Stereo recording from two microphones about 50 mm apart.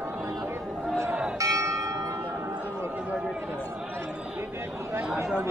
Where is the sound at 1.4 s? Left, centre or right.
Right.